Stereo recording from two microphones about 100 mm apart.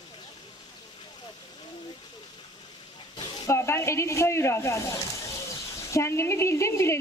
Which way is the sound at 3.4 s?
25° left (ahead or behind).